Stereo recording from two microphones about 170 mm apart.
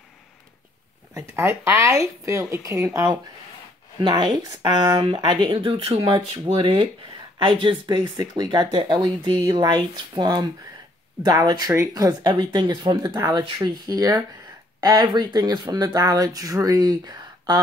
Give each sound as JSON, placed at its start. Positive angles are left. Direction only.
{"t": 1.3, "sound": "speech", "side_deg": -15}